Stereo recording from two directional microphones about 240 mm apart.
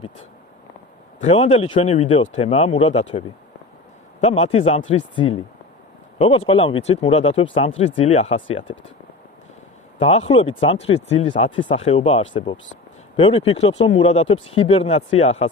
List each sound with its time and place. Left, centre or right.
1.2 s speech: left
10.0 s speech: left